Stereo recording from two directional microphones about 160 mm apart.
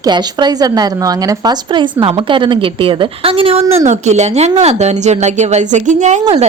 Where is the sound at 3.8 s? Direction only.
45° right (ahead or behind).